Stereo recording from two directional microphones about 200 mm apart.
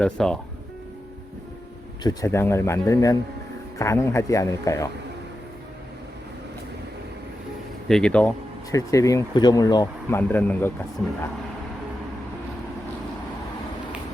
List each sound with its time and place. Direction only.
0.0 s speech: 5° left (ahead or behind)
2.0 s speech: 15° left (ahead or behind)
7.9 s speech: 5° left (ahead or behind)
8.7 s speech: 15° left (ahead or behind)